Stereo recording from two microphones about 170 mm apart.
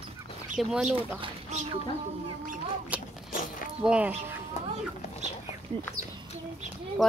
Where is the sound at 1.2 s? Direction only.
40° right (ahead or behind).